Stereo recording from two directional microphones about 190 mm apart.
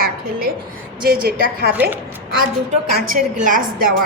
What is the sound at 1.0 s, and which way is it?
Speech, 50° right (ahead or behind).